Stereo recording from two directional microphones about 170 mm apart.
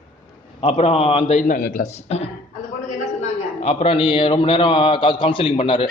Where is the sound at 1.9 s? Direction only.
40° left (ahead or behind).